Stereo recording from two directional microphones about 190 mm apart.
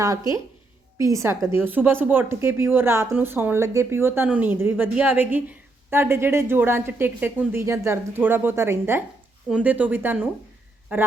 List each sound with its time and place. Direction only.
0.0 s a woman's voice: 20° right (ahead or behind)